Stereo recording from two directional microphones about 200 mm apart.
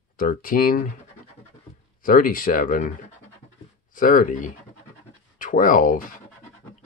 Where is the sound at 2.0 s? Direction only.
45° left (ahead or behind).